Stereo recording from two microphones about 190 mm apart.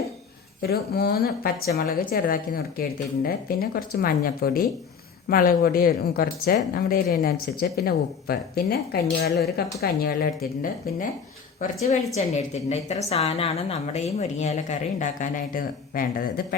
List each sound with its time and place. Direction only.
0.6 s speech: 55° left (ahead or behind)
11.6 s a woman's voice: 35° left (ahead or behind)